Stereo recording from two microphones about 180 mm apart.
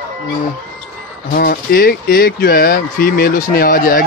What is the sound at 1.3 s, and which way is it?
Speech, 55° left (ahead or behind).